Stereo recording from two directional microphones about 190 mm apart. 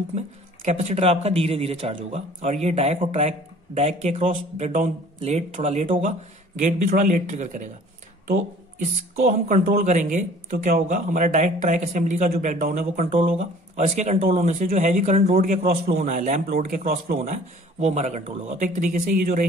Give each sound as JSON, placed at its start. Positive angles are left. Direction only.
{"t": 0.1, "sound": "speech", "side_deg": -35}
{"t": 9.5, "sound": "speech", "side_deg": -40}
{"t": 13.0, "sound": "speech", "side_deg": -30}